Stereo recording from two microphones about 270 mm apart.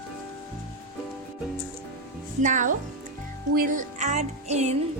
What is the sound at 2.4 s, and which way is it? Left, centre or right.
Music, right.